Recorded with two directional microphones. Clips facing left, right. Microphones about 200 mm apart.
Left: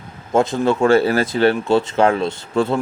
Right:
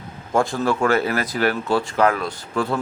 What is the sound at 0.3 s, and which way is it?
Speech, 20° left (ahead or behind).